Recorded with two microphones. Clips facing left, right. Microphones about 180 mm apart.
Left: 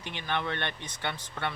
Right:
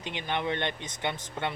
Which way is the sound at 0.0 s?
20° right (ahead or behind).